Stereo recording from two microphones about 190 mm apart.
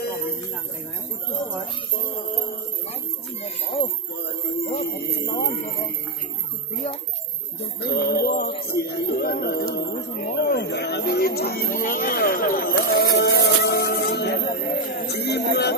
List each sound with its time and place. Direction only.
4.6 s music: 60° left (ahead or behind)
7.8 s music: 55° left (ahead or behind)
8.6 s speech: 55° left (ahead or behind)